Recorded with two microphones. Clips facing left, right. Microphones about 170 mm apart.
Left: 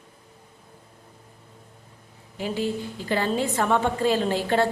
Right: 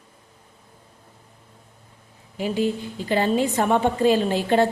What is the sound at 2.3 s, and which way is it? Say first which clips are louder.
A woman's voice: right 4 dB; 15° right (ahead or behind).